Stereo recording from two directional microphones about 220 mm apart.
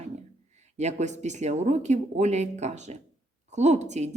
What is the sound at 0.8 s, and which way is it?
A woman's voice, 30° right (ahead or behind).